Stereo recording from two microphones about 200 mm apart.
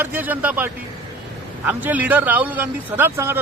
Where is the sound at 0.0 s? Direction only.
10° right (ahead or behind).